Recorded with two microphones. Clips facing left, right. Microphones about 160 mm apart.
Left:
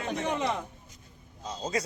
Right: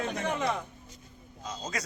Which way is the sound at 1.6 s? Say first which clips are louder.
Left 6 dB; 30° left (ahead or behind).